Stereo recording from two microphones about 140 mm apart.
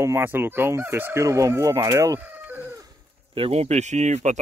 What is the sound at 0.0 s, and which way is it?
Chicken, 15° right (ahead or behind).